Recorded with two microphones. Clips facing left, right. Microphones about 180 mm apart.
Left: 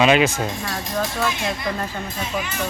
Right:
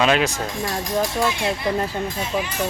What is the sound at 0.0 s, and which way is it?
Speech, 5° left (ahead or behind).